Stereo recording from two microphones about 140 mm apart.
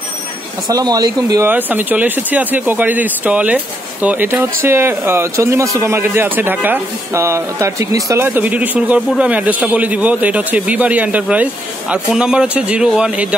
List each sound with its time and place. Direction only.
0.7 s speech: 25° right (ahead or behind)
1.5 s speech: 15° right (ahead or behind)